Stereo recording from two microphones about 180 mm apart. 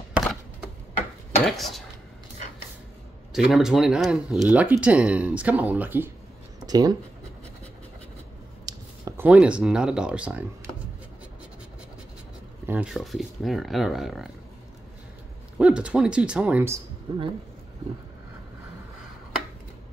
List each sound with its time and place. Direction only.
0.1 s a sound: centre (ahead or behind)
1.4 s dishes: centre (ahead or behind)
3.4 s speech: centre (ahead or behind)
6.6 s speech: 20° right (ahead or behind)
8.6 s speech: 15° right (ahead or behind)
12.6 s speech: 5° right (ahead or behind)
15.5 s speech: 5° right (ahead or behind)